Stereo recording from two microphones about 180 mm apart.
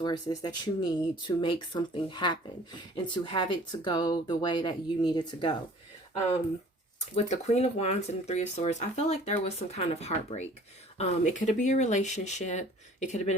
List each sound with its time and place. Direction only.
0.0 s speech: 25° left (ahead or behind)
7.2 s speech: 40° left (ahead or behind)